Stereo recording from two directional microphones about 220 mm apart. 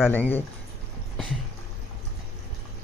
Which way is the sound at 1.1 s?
Centre (ahead or behind).